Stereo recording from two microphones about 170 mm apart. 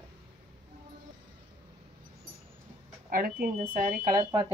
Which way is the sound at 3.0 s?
60° right (ahead or behind).